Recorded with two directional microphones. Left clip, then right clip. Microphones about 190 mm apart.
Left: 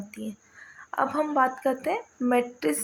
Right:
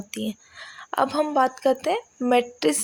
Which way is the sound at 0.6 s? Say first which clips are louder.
Right 4 dB; 60° right (ahead or behind).